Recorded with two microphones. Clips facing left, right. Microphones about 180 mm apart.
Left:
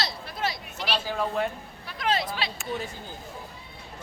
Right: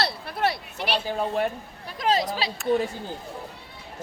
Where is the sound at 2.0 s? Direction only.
40° right (ahead or behind).